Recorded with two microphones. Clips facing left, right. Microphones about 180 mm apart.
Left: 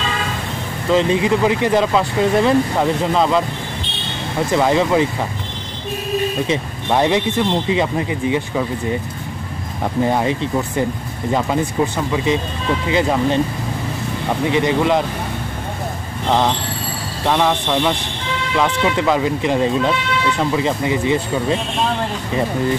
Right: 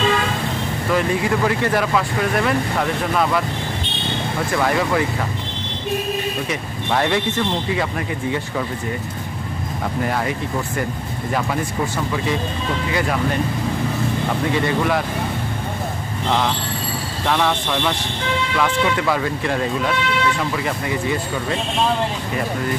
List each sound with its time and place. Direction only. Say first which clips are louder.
0.9 s speech: left 5 dB; 20° left (ahead or behind)
4.5 s speech: left 5 dB; 20° left (ahead or behind)
6.5 s speech: left 4 dB; 20° left (ahead or behind)
10.0 s speech: left 5 dB; 25° left (ahead or behind)
11.3 s speech: left 4 dB; 20° left (ahead or behind)
14.5 s speech: left 5 dB; 20° left (ahead or behind)
17.3 s speech: left 3 dB; 15° left (ahead or behind)